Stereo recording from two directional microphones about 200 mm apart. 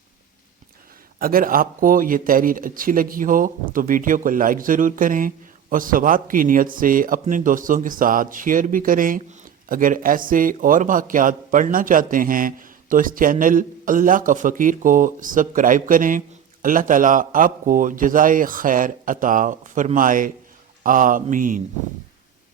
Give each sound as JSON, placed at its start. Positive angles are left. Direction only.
{"t": 1.2, "sound": "speech", "side_deg": -45}
{"t": 20.8, "sound": "mantra", "side_deg": -40}